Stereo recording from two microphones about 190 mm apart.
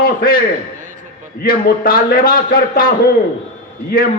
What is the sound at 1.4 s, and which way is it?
A man's voice, 50° left (ahead or behind).